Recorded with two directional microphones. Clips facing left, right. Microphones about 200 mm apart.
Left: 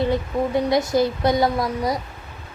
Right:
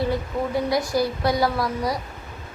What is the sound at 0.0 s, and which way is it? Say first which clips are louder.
A child's voice: left 3 dB; 20° left (ahead or behind).